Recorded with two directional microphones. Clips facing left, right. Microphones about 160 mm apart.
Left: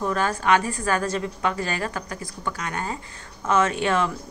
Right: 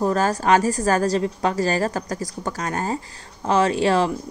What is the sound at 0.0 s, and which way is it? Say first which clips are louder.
Speech: right 4 dB; 40° right (ahead or behind).